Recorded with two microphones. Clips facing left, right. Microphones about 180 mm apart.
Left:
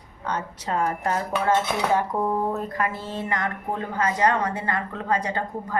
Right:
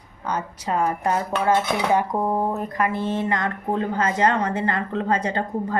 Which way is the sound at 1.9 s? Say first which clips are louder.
Right 2 dB; 15° right (ahead or behind).